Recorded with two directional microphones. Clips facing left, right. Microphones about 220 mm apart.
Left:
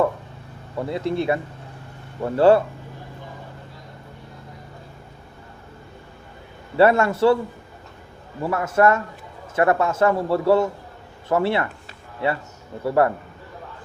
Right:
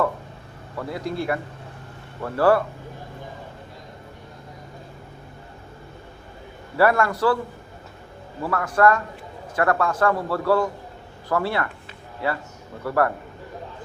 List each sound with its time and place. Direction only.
0.8 s a man's voice: 25° left (ahead or behind)
6.7 s a man's voice: 25° left (ahead or behind)
8.4 s a man's voice: 25° left (ahead or behind)
12.8 s a man's voice: 25° left (ahead or behind)